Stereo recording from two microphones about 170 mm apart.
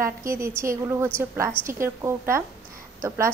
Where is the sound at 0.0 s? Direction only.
15° right (ahead or behind).